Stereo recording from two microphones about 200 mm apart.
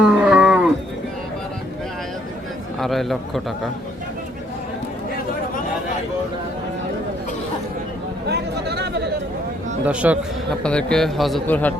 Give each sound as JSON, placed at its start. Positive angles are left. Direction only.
{"t": 0.0, "sound": "moo", "side_deg": -5}
{"t": 2.8, "sound": "a man's voice", "side_deg": 0}
{"t": 8.3, "sound": "chatter", "side_deg": -55}
{"t": 9.8, "sound": "a man's voice", "side_deg": -5}
{"t": 10.6, "sound": "a man's voice", "side_deg": 5}